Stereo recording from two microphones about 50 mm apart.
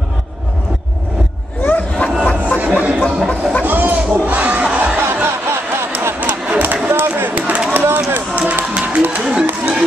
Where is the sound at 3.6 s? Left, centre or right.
Right.